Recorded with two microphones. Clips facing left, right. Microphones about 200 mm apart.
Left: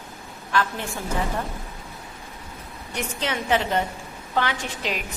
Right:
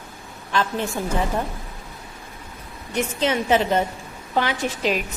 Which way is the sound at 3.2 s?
20° right (ahead or behind).